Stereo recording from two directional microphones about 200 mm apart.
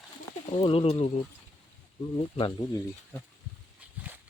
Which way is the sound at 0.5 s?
25° left (ahead or behind).